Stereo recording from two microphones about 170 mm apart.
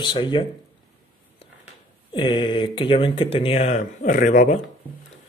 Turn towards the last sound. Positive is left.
turn(degrees=45)  # may be behind; listen again after turning